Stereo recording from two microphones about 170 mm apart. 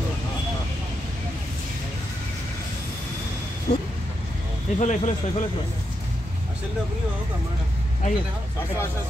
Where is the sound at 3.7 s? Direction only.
45° left (ahead or behind).